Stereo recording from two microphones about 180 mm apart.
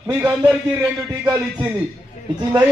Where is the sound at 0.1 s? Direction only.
10° right (ahead or behind).